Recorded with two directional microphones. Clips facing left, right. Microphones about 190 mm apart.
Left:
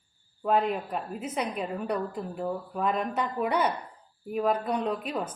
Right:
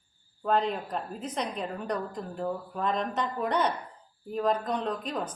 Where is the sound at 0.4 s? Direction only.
10° left (ahead or behind).